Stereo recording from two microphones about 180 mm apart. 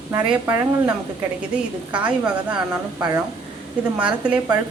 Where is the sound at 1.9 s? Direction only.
5° right (ahead or behind).